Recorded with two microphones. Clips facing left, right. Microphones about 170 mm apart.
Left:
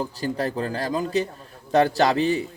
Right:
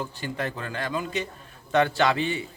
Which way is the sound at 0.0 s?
35° left (ahead or behind).